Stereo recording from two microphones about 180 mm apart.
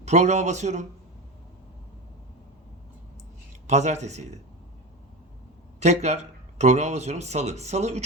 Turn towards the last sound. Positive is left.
turn(degrees=-40)  # may be behind; listen again after turning